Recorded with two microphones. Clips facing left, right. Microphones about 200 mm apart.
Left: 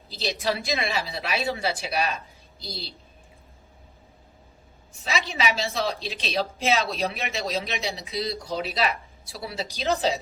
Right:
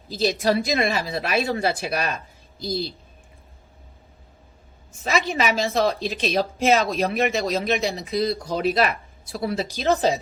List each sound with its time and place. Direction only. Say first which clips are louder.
0.1 s speech: right 7 dB; 50° right (ahead or behind)
5.0 s speech: right 5 dB; 50° right (ahead or behind)